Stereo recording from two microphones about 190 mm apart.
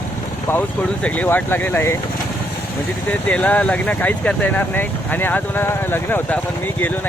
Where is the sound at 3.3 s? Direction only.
10° left (ahead or behind).